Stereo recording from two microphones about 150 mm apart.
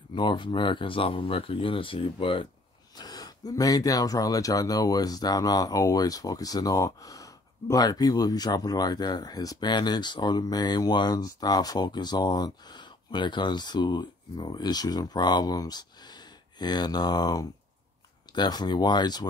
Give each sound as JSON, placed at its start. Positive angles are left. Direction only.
{"t": 0.1, "sound": "speech", "side_deg": 30}